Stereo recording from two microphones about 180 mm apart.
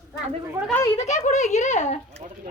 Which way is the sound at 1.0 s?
40° left (ahead or behind).